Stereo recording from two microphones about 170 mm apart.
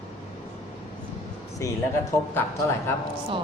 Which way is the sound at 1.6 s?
15° left (ahead or behind).